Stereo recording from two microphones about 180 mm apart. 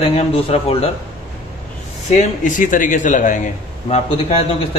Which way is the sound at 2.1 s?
45° left (ahead or behind).